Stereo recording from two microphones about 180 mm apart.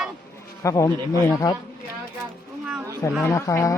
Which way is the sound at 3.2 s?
15° left (ahead or behind).